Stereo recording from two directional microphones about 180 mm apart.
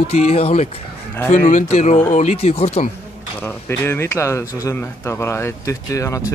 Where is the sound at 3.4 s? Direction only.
10° left (ahead or behind).